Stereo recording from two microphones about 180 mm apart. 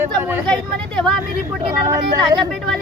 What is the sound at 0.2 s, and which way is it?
Speech, 10° right (ahead or behind).